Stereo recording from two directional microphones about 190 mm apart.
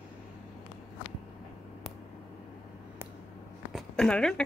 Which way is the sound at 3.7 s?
5° left (ahead or behind).